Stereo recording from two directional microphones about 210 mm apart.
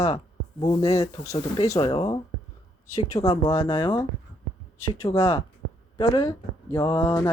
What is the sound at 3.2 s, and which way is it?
Speech, 25° left (ahead or behind).